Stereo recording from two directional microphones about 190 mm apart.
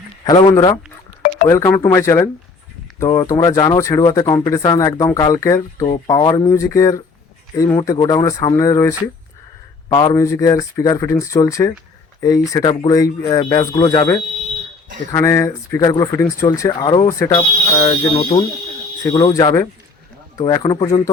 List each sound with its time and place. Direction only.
0.3 s speech: 20° left (ahead or behind)